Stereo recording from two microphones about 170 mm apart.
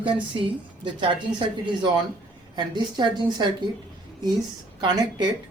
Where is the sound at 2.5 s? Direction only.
25° right (ahead or behind).